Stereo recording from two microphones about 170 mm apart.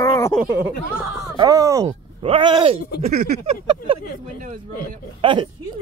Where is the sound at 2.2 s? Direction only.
30° right (ahead or behind).